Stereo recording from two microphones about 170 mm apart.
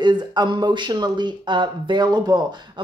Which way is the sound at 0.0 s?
25° right (ahead or behind).